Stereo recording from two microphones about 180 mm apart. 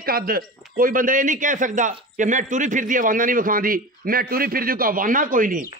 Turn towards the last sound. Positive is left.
turn(degrees=-50)  # may be behind; listen again after turning